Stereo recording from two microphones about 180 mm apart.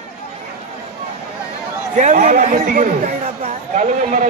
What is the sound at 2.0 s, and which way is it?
A man's voice, 45° right (ahead or behind).